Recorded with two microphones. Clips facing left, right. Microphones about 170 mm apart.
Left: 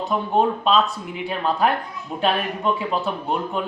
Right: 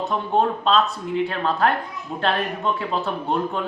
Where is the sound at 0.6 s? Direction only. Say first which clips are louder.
Even; 10° left (ahead or behind).